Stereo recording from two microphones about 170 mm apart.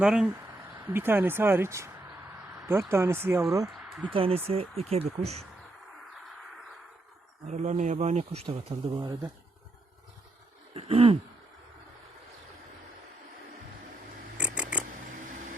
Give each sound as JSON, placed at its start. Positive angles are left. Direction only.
{"t": 0.0, "sound": "speech", "side_deg": -5}
{"t": 2.5, "sound": "a sound", "side_deg": -20}
{"t": 2.9, "sound": "speech", "side_deg": -15}
{"t": 3.8, "sound": "a sound", "side_deg": -5}
{"t": 4.1, "sound": "speech", "side_deg": -35}
{"t": 7.4, "sound": "speech", "side_deg": -45}
{"t": 9.0, "sound": "speech", "side_deg": -20}
{"t": 10.8, "sound": "speech", "side_deg": -35}
{"t": 14.3, "sound": "scissors", "side_deg": -5}